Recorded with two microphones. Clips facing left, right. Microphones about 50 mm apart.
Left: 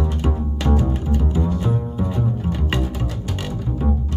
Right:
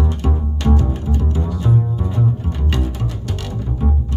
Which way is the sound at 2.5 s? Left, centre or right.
Centre.